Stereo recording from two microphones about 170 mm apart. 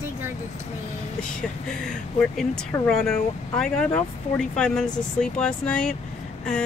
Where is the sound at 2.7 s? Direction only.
15° left (ahead or behind).